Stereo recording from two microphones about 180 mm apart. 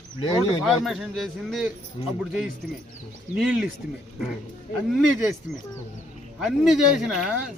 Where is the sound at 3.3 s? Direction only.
5° right (ahead or behind).